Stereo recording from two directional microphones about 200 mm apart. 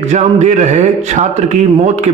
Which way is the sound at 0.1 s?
35° right (ahead or behind).